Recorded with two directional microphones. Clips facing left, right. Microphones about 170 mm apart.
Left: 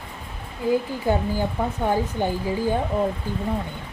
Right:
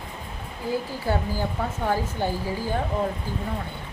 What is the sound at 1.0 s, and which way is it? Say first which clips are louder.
Speech: left 3 dB; 15° left (ahead or behind).